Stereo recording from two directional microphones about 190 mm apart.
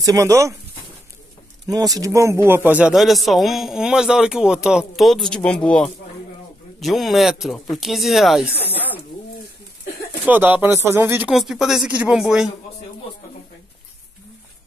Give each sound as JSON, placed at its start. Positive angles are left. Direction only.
{"t": 0.0, "sound": "speech", "side_deg": -15}
{"t": 1.7, "sound": "a man's voice", "side_deg": -20}
{"t": 8.6, "sound": "speech", "side_deg": 10}
{"t": 10.2, "sound": "speech", "side_deg": -10}